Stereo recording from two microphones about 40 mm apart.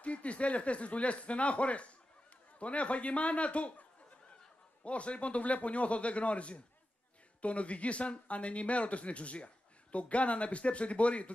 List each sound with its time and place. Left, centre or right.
0.0 s speech: left
4.8 s speech: left